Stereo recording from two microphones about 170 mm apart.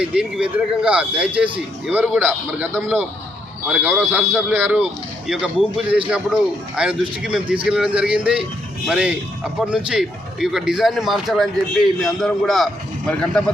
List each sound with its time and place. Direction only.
0.1 s a man's voice: 5° right (ahead or behind)
3.7 s a man's voice: 10° right (ahead or behind)